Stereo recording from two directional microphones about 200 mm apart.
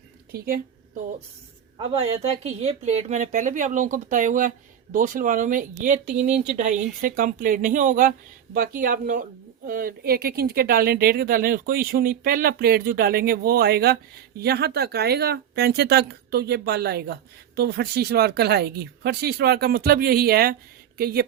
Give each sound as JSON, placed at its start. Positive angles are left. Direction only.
{"t": 0.3, "sound": "speech", "side_deg": -50}
{"t": 1.9, "sound": "speech", "side_deg": -30}